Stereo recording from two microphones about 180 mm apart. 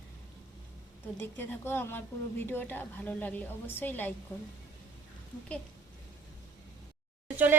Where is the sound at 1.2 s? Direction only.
10° left (ahead or behind).